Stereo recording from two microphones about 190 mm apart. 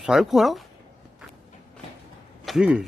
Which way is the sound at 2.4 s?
5° right (ahead or behind).